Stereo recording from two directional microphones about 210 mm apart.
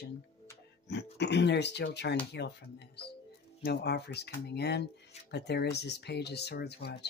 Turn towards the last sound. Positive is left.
turn(degrees=50)  # may be behind; listen again after turning